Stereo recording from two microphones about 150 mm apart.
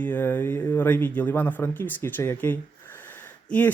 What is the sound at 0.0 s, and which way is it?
A man's voice, 10° left (ahead or behind).